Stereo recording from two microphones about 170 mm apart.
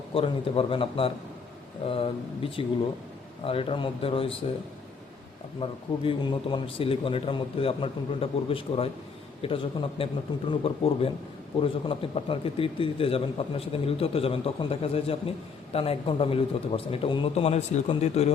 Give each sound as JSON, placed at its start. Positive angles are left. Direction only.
{"t": 0.1, "sound": "a man's voice", "side_deg": 35}
{"t": 5.5, "sound": "a man's voice", "side_deg": 30}